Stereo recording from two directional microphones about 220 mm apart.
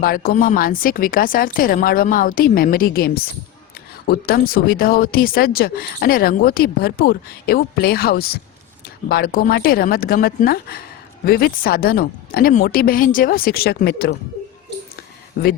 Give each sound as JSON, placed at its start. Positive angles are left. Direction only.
{"t": 0.0, "sound": "speech", "side_deg": 40}